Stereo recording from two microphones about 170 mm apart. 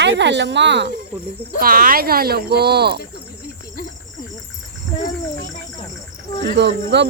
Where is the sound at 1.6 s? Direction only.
55° right (ahead or behind).